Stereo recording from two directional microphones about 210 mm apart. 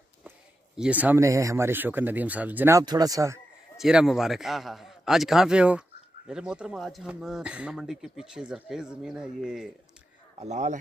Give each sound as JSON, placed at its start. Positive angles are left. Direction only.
{"t": 0.7, "sound": "speech", "side_deg": -5}
{"t": 3.7, "sound": "a man's voice", "side_deg": 0}
{"t": 10.4, "sound": "speech", "side_deg": -35}